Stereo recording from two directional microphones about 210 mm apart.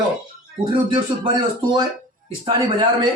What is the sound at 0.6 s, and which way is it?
A man's voice, 20° right (ahead or behind).